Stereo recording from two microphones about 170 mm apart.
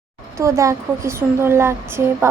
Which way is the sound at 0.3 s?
15° right (ahead or behind).